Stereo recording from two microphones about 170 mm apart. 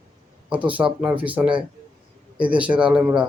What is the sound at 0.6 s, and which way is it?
Speech, 10° right (ahead or behind).